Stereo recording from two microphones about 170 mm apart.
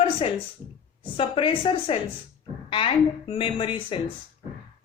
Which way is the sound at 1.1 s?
35° left (ahead or behind).